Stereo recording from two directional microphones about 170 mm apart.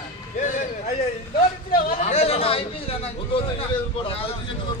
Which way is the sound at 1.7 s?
55° left (ahead or behind).